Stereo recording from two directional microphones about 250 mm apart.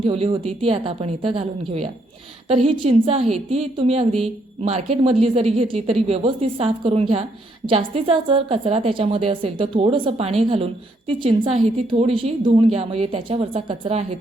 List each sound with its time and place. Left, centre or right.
0.0 s a woman's voice: right